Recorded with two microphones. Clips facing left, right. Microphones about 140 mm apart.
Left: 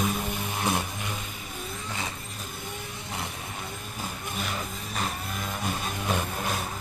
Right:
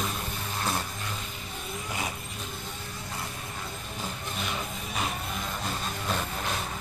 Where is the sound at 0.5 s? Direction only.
15° left (ahead or behind).